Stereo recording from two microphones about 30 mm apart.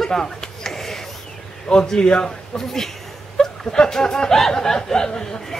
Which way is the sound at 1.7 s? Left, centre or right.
Left.